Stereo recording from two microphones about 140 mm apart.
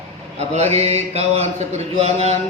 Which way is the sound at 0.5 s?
50° right (ahead or behind).